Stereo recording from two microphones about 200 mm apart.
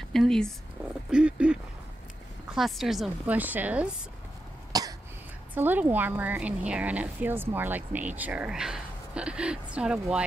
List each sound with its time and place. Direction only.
0.1 s speech: centre (ahead or behind)
4.7 s cough: 20° right (ahead or behind)
5.5 s speech: 10° right (ahead or behind)